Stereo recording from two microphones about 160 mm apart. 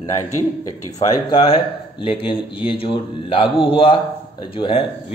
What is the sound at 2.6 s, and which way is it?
A man's voice, 35° left (ahead or behind).